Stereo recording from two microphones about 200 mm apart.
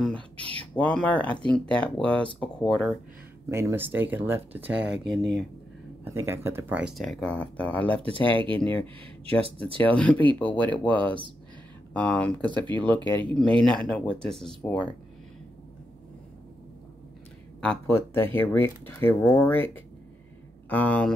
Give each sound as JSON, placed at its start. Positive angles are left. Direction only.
{"t": 0.0, "sound": "a sound", "side_deg": 5}
{"t": 0.6, "sound": "speech", "side_deg": 5}
{"t": 3.4, "sound": "speech", "side_deg": -15}
{"t": 6.0, "sound": "speech", "side_deg": -10}
{"t": 8.1, "sound": "speech", "side_deg": -25}
{"t": 9.9, "sound": "speech", "side_deg": 5}
{"t": 11.1, "sound": "speech", "side_deg": -25}
{"t": 11.9, "sound": "speech", "side_deg": 5}
{"t": 17.6, "sound": "speech", "side_deg": 10}